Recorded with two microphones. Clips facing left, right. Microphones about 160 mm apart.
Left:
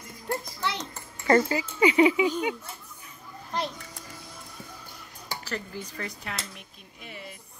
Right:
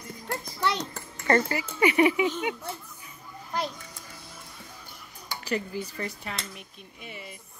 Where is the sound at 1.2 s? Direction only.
10° left (ahead or behind).